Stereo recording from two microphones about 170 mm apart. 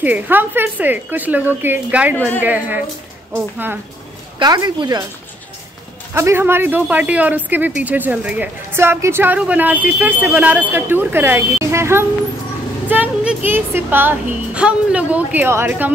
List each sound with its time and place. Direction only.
0.0 s speech: 10° right (ahead or behind)
4.4 s a woman's voice: 25° right (ahead or behind)
6.1 s speech: 15° right (ahead or behind)